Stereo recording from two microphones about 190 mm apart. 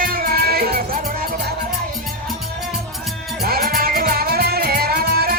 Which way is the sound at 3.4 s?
50° right (ahead or behind).